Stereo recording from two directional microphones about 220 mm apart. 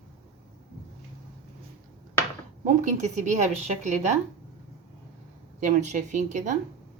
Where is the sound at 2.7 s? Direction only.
35° right (ahead or behind).